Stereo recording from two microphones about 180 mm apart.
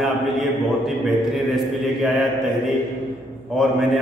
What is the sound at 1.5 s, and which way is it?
Speech, centre (ahead or behind).